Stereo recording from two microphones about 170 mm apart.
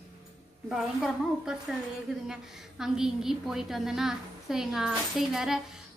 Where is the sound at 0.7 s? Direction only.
5° right (ahead or behind).